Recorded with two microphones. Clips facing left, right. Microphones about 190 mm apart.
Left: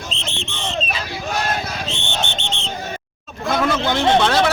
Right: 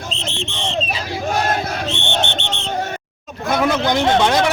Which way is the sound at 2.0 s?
65° right (ahead or behind).